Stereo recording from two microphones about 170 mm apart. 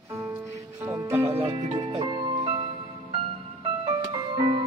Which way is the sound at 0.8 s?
20° right (ahead or behind).